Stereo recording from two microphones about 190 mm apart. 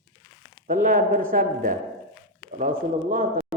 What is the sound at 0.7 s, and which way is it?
Speech, 45° right (ahead or behind).